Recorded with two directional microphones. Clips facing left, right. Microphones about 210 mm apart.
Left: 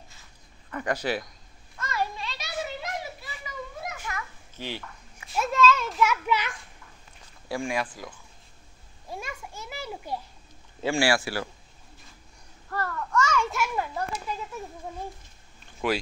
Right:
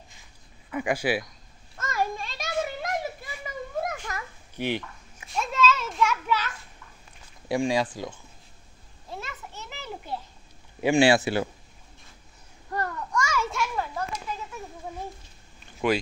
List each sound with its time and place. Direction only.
0.7 s speech: 10° right (ahead or behind)
1.8 s children playing: 45° right (ahead or behind)
4.6 s a sound: 20° right (ahead or behind)
5.3 s children playing: centre (ahead or behind)
6.2 s children playing: 15° left (ahead or behind)
7.4 s speech: 20° right (ahead or behind)
9.1 s children playing: 15° left (ahead or behind)
10.8 s speech: 20° right (ahead or behind)
12.6 s a sound: 15° right (ahead or behind)
13.5 s children playing: 10° left (ahead or behind)